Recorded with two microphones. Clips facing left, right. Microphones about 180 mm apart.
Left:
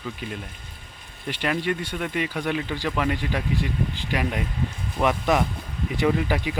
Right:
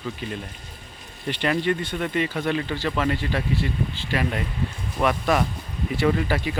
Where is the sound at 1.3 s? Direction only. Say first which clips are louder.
Right 2 dB; 10° left (ahead or behind).